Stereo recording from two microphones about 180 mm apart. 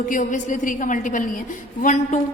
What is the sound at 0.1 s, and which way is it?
A woman's voice, 45° left (ahead or behind).